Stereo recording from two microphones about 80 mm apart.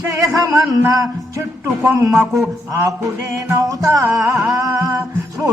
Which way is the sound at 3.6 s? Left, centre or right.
Right.